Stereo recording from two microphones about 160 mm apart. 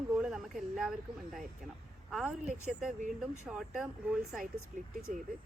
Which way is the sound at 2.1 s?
5° right (ahead or behind).